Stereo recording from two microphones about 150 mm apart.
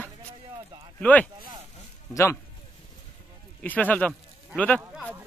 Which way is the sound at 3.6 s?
10° left (ahead or behind).